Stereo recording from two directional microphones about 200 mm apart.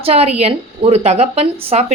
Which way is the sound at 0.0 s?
30° right (ahead or behind).